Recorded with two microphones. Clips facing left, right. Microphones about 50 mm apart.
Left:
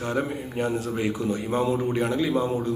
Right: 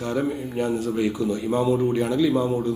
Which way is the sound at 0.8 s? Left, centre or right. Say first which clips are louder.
Right 3 dB; left.